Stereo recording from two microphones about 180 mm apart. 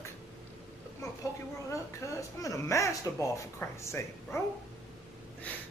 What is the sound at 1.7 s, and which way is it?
Speech, 15° left (ahead or behind).